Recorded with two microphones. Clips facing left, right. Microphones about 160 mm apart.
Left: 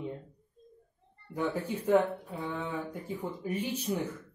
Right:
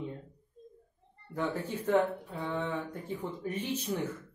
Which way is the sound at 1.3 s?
10° left (ahead or behind).